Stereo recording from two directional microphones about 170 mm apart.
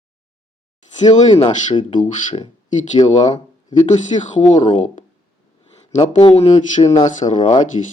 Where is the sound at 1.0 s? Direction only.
35° left (ahead or behind).